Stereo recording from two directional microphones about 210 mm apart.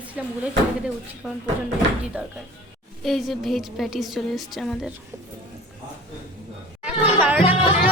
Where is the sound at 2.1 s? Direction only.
5° right (ahead or behind).